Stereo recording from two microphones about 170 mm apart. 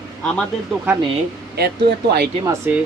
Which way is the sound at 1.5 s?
70° right (ahead or behind).